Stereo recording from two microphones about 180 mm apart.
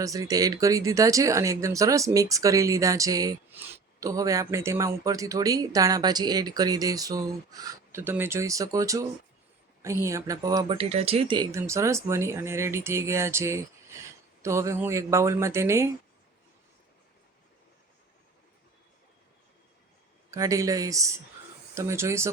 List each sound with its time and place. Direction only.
0.0 s speech: 20° right (ahead or behind)
20.3 s speech: 20° right (ahead or behind)